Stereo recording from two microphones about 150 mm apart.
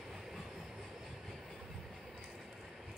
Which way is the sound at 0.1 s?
Centre (ahead or behind).